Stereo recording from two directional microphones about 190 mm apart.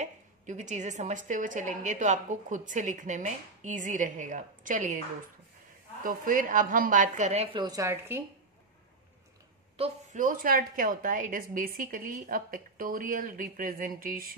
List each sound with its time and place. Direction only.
0.0 s a woman's voice: 40° right (ahead or behind)
6.0 s a woman's voice: 45° right (ahead or behind)
7.5 s a woman's voice: 20° right (ahead or behind)
9.8 s a woman's voice: 45° right (ahead or behind)